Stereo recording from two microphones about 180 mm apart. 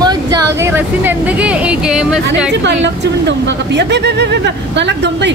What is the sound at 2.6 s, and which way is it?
Speech, 80° right.